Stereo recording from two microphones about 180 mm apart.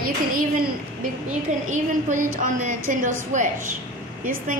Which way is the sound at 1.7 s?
45° right (ahead or behind).